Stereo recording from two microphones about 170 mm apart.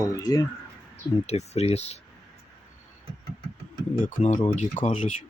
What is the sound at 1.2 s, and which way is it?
Speech, 40° left (ahead or behind).